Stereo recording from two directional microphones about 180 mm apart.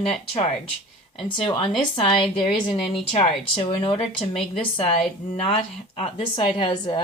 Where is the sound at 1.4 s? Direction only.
30° left (ahead or behind).